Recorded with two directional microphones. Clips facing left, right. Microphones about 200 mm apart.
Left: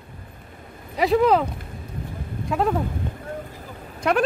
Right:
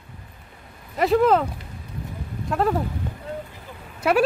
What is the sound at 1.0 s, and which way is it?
Speech, centre (ahead or behind).